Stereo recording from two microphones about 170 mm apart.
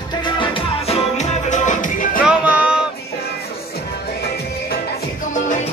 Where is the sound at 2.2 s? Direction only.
5° right (ahead or behind).